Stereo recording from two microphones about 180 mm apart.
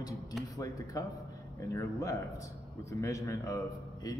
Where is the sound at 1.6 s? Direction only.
15° left (ahead or behind).